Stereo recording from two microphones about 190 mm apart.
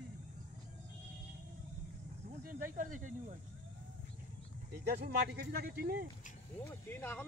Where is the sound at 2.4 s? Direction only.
45° right (ahead or behind).